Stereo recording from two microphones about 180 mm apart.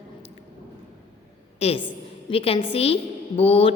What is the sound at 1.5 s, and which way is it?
Speech, 35° left (ahead or behind).